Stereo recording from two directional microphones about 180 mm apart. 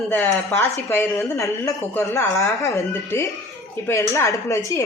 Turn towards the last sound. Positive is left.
turn(degrees=15)  # may be behind; listen again after turning